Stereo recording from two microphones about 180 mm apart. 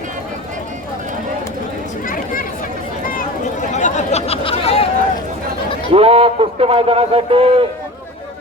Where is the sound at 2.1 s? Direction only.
50° left (ahead or behind); by 4.8 s 30° left (ahead or behind).